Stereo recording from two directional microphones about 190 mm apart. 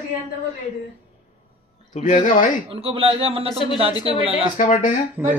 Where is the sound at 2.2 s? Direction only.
45° left (ahead or behind).